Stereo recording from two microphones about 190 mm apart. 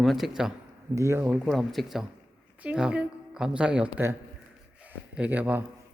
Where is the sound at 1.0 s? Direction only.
15° right (ahead or behind).